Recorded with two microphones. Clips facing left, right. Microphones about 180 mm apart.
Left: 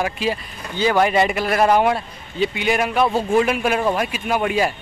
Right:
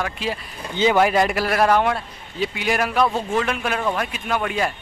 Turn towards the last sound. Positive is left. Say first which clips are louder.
# left 3 dB
turn(degrees=10)  # may be behind; listen again after turning